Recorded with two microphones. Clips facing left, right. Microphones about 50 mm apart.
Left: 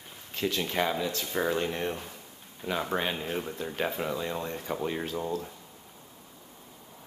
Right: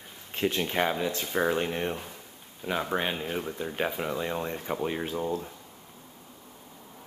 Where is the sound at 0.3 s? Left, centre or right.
Right.